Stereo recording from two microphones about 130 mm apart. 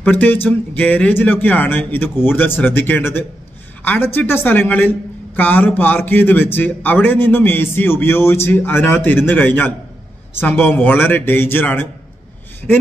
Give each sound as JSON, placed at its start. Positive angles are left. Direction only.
{"t": 0.0, "sound": "a woman's voice", "side_deg": 15}